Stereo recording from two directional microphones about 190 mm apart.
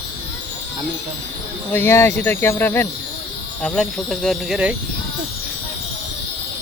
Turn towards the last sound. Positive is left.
turn(degrees=-5)  # may be behind; listen again after turning